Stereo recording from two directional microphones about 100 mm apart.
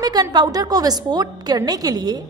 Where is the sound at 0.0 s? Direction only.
40° right (ahead or behind).